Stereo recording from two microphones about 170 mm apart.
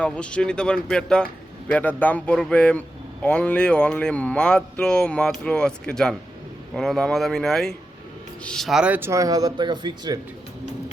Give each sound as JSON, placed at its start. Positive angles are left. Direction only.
{"t": 0.0, "sound": "speech", "side_deg": 5}